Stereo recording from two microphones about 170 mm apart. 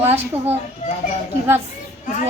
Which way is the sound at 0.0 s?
40° right (ahead or behind).